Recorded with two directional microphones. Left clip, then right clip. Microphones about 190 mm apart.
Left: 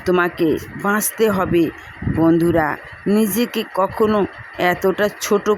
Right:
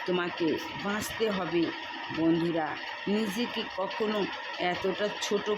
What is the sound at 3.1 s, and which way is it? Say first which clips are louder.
Speech: left 13 dB; 50° left (ahead or behind).